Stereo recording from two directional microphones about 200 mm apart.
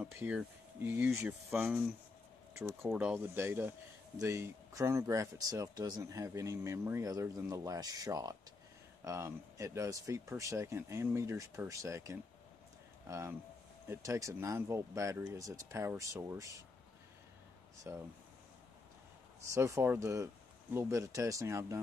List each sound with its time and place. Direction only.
0.0 s speech: 10° right (ahead or behind)
17.9 s speech: 10° right (ahead or behind)
19.5 s speech: 15° right (ahead or behind)